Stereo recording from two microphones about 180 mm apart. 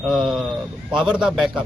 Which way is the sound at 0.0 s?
Centre (ahead or behind).